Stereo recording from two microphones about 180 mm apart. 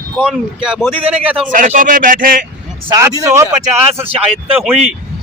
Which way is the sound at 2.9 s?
15° right (ahead or behind).